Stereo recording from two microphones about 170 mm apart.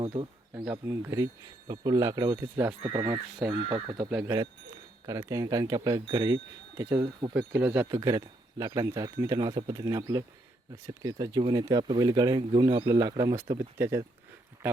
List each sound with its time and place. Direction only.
0.0 s speech: 30° right (ahead or behind)
0.5 s speech: 10° right (ahead or behind)
2.8 s speech: 30° right (ahead or behind)
7.3 s speech: 5° right (ahead or behind)
7.9 s speech: 20° right (ahead or behind)